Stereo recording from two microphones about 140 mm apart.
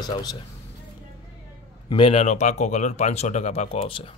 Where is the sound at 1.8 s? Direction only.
40° left (ahead or behind).